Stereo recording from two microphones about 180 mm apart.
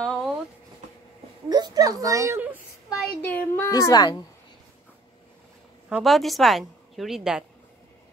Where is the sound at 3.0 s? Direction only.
10° left (ahead or behind).